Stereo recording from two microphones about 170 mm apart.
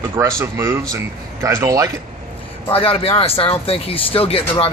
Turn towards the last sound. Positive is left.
turn(degrees=35)  # may be behind; listen again after turning